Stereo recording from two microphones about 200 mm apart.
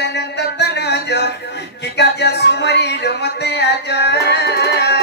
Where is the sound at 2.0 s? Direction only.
60° left (ahead or behind).